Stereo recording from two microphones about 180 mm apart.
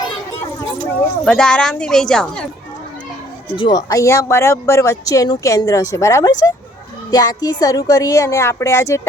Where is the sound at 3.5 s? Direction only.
25° left (ahead or behind).